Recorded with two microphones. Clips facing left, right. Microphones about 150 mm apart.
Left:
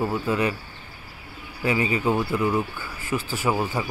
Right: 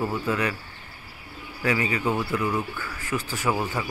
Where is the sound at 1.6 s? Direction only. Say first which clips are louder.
Left 2 dB; 25° left (ahead or behind).